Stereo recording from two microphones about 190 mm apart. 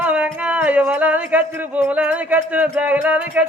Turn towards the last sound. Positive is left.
turn(degrees=-5)  # may be behind; listen again after turning